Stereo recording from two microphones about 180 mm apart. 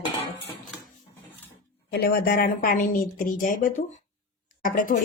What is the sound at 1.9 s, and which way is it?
A woman's voice, 60° left (ahead or behind).